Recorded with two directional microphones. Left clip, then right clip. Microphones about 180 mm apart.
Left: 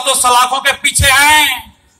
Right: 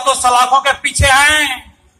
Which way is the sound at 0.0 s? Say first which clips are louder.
Left 1 dB; 15° left (ahead or behind).